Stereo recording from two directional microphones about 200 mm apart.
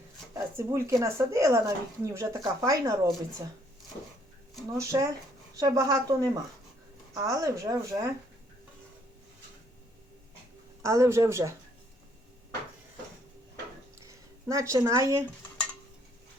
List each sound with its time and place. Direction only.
0.3 s speech: 15° right (ahead or behind)
4.8 s speech: 15° right (ahead or behind)
10.8 s speech: 15° right (ahead or behind)
14.1 s speech: 15° right (ahead or behind)